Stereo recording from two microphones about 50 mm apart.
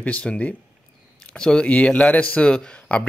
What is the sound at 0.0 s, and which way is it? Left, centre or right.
A man's voice, left.